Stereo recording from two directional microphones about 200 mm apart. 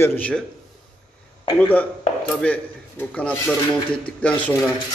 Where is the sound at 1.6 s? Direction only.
10° left (ahead or behind).